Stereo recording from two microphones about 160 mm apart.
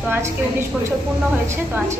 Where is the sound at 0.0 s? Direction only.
15° right (ahead or behind).